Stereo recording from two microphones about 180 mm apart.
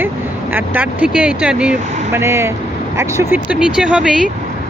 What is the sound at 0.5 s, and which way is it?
Speech, 10° right (ahead or behind).